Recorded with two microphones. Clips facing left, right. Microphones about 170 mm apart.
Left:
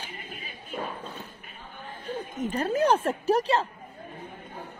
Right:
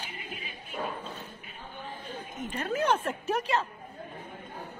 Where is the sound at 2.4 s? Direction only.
35° left (ahead or behind).